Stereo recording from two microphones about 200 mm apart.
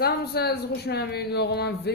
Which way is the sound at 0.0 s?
55° left (ahead or behind).